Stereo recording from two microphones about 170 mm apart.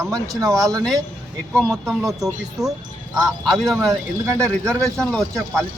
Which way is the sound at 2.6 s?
5° right (ahead or behind).